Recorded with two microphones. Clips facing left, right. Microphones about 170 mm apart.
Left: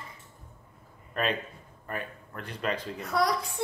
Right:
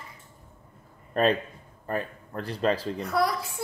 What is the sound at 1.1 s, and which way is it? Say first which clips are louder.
A man's voice: right 7 dB; 35° right (ahead or behind).